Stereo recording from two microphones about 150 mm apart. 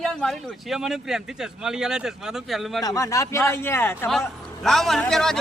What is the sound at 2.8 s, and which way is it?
Speech, 25° left (ahead or behind).